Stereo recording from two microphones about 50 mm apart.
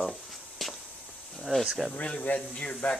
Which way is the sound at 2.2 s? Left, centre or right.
Left.